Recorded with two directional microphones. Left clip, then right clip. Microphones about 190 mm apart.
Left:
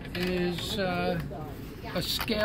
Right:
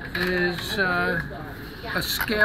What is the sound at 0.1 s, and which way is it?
Speech, 35° left (ahead or behind).